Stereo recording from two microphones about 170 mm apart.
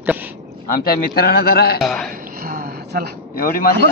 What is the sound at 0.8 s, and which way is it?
Speech, 65° left (ahead or behind).